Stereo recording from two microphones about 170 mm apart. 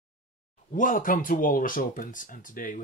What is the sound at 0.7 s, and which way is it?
Speech, 50° left (ahead or behind).